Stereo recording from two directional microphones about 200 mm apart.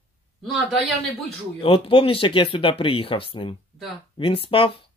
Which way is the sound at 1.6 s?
25° left (ahead or behind).